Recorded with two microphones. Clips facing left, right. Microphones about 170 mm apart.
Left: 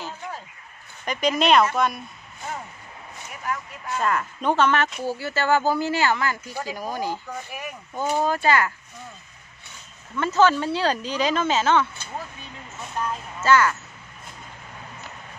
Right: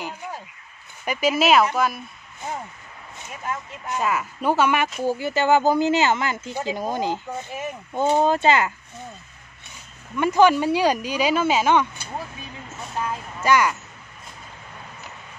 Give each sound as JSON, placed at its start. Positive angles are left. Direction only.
{"t": 1.0, "sound": "speech", "side_deg": -5}
{"t": 3.4, "sound": "speech", "side_deg": -20}
{"t": 4.0, "sound": "speech", "side_deg": -5}
{"t": 10.1, "sound": "speech", "side_deg": -15}